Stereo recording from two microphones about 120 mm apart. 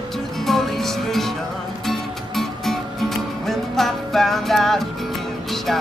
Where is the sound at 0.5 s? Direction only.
Centre (ahead or behind).